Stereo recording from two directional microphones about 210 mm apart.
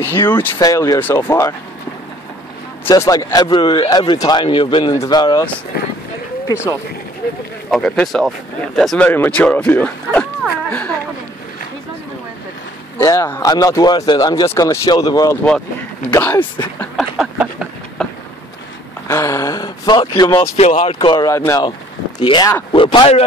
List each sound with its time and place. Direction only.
0.1 s speech: 10° left (ahead or behind)
2.9 s speech: 15° left (ahead or behind)
6.5 s speech: 15° left (ahead or behind)
7.7 s speech: 5° left (ahead or behind)
12.9 s speech: 15° left (ahead or behind)
16.8 s a sound: centre (ahead or behind)
19.0 s a sound: 15° left (ahead or behind)
20.2 s speech: 15° left (ahead or behind)
20.5 s speech: 30° left (ahead or behind)